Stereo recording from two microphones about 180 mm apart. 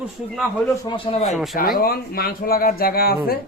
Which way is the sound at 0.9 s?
30° left (ahead or behind).